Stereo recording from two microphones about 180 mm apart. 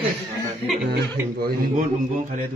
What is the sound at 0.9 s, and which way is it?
Speech, 65° right (ahead or behind).